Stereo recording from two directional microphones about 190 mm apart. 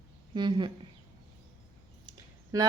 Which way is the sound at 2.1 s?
20° right (ahead or behind).